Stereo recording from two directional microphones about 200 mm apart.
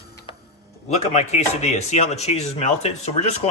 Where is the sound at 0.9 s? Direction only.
35° left (ahead or behind).